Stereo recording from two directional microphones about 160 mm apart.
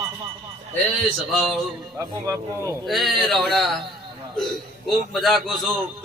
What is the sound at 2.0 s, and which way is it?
Speech, 20° right (ahead or behind).